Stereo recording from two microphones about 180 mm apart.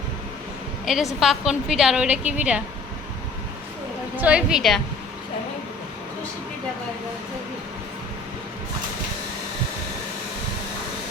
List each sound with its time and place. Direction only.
0.9 s a woman's voice: centre (ahead or behind)
4.2 s a woman's voice: 5° right (ahead or behind)